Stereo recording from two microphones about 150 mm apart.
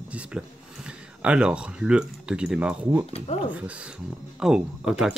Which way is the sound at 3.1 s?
40° left (ahead or behind).